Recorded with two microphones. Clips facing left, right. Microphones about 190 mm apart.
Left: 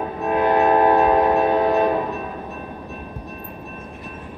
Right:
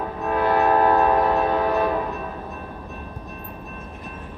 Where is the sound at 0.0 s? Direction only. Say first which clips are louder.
Left 3 dB; 20° left (ahead or behind).